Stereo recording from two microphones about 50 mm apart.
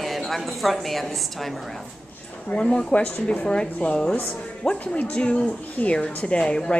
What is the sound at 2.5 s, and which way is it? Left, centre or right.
Speech, centre.